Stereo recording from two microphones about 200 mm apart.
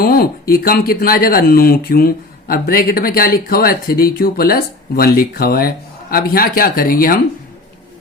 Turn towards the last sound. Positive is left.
turn(degrees=45)  # may be behind; listen again after turning